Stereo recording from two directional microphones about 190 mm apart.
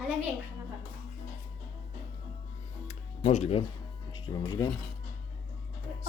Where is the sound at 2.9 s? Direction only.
35° left (ahead or behind).